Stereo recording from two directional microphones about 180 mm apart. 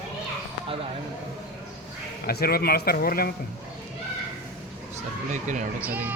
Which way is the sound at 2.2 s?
60° left (ahead or behind).